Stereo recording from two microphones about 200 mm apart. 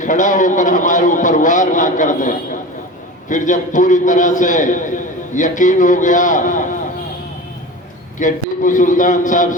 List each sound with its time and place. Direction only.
0.0 s a man's voice: 40° left (ahead or behind)
8.2 s a man's voice: 40° left (ahead or behind)